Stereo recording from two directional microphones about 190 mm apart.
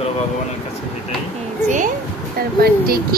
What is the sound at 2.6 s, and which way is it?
Speech, 50° right (ahead or behind).